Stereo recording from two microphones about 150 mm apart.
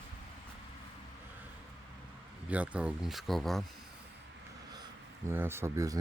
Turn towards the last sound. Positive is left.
turn(degrees=-20)  # may be behind; listen again after turning